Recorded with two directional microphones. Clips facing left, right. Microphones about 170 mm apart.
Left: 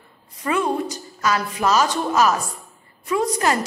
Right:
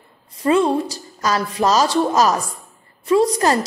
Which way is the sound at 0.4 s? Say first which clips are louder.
Right 6 dB; 30° right (ahead or behind).